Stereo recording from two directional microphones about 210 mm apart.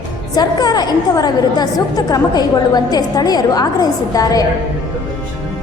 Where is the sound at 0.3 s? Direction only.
20° left (ahead or behind).